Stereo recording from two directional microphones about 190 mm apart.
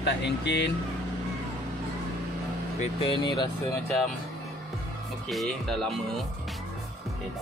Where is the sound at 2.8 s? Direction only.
30° left (ahead or behind).